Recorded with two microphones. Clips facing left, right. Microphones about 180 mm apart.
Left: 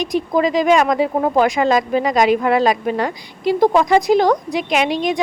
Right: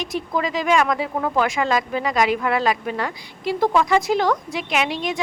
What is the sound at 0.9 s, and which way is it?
Speech, 35° left (ahead or behind).